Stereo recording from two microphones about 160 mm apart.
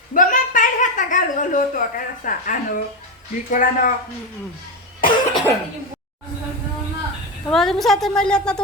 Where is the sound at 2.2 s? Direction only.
55° left (ahead or behind).